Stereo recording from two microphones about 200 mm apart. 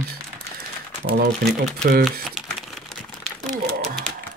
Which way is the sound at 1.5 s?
Centre (ahead or behind).